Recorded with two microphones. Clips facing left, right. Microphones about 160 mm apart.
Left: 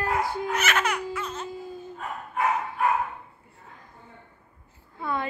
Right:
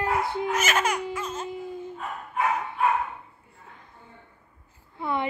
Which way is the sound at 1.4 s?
20° right (ahead or behind).